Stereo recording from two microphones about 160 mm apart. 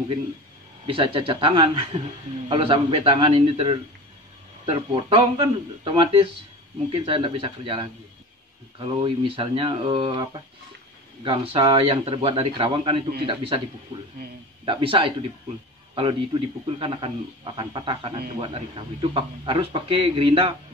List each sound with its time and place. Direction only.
0.8 s a man's voice: 35° right (ahead or behind)
14.6 s a man's voice: 30° right (ahead or behind)